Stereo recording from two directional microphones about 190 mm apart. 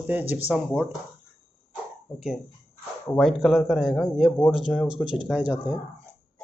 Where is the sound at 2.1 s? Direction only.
Centre (ahead or behind).